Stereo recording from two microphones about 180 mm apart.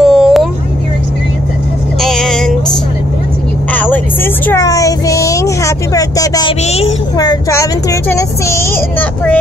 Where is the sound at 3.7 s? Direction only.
10° left (ahead or behind).